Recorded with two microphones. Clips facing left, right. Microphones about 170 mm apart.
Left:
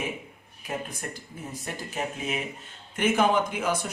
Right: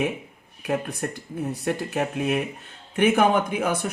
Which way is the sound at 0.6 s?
65° right (ahead or behind).